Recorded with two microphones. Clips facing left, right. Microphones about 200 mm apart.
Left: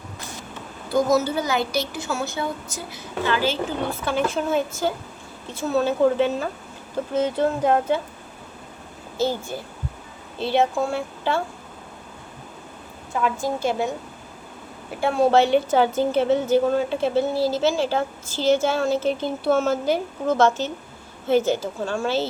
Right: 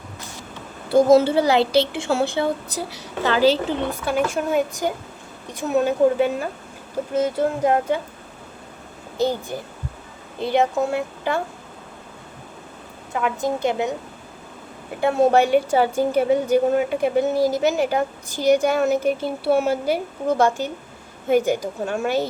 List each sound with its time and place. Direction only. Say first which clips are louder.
0.9 s a woman's voice: right 6 dB; 25° right (ahead or behind)
3.8 s a woman's voice: right 2 dB; 15° right (ahead or behind)
9.1 s a woman's voice: right 2 dB; 15° right (ahead or behind)
13.2 s a woman's voice: right 2 dB; 20° right (ahead or behind)
15.0 s a woman's voice: right 1 dB; 20° right (ahead or behind)